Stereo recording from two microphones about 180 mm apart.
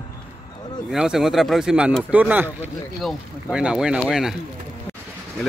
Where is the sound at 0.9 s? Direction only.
5° right (ahead or behind).